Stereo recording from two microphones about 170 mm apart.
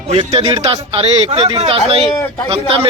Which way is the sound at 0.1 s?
35° right (ahead or behind).